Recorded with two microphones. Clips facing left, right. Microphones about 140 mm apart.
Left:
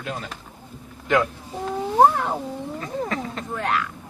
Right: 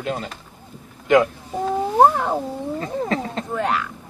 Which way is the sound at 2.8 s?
35° right (ahead or behind).